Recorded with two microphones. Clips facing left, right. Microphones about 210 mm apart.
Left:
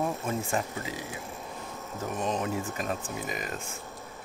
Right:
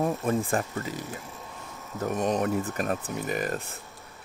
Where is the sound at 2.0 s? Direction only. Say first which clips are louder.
Right 5 dB; 60° right (ahead or behind).